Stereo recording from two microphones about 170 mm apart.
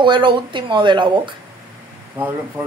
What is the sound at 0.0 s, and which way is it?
Speech, 30° right (ahead or behind).